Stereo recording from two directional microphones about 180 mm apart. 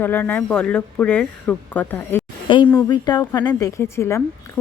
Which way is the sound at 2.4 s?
25° left (ahead or behind).